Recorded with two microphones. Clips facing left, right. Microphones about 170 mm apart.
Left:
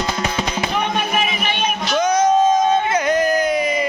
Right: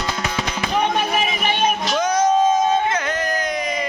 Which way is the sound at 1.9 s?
5° right (ahead or behind).